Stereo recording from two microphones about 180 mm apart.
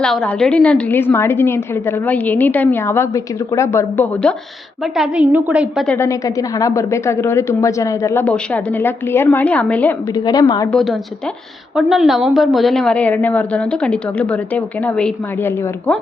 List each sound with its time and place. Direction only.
0.0 s a woman's voice: 5° left (ahead or behind)
4.9 s a woman's voice: 5° right (ahead or behind)
5.8 s a woman's voice: 10° left (ahead or behind)
10.2 s a woman's voice: 25° left (ahead or behind)
10.7 s a woman's voice: 5° left (ahead or behind)